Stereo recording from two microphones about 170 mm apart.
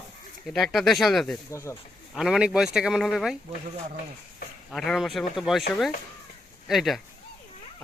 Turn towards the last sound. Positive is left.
turn(degrees=0)  # may be behind; listen again after turning